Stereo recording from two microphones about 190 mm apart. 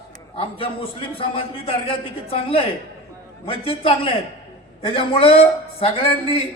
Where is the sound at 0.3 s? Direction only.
30° left (ahead or behind).